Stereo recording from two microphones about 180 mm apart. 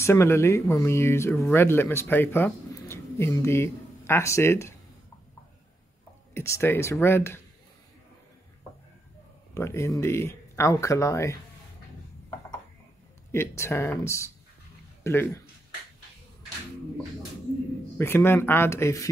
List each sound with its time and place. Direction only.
0.0 s speech: 15° left (ahead or behind)
6.3 s speech: 15° left (ahead or behind)
9.5 s speech: 15° left (ahead or behind)
13.3 s speech: 15° left (ahead or behind)
17.9 s speech: 15° left (ahead or behind)